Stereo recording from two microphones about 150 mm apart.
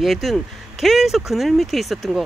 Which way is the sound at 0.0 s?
Centre (ahead or behind).